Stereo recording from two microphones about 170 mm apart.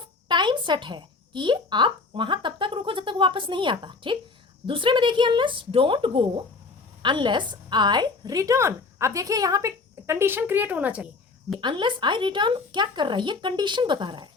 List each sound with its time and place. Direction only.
0.3 s a woman's voice: 25° right (ahead or behind); by 11.1 s 10° right (ahead or behind)
11.6 s a woman's voice: 25° right (ahead or behind)